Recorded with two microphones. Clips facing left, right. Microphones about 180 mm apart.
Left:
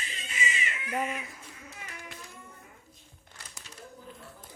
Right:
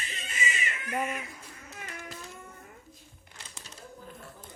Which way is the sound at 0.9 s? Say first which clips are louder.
Even; centre (ahead or behind).